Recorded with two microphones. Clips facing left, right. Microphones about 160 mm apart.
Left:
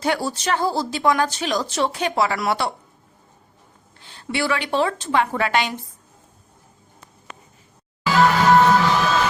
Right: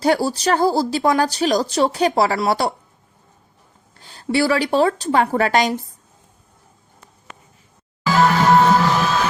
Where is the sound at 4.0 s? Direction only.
40° right (ahead or behind).